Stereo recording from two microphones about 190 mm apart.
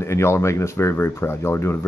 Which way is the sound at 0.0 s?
15° left (ahead or behind).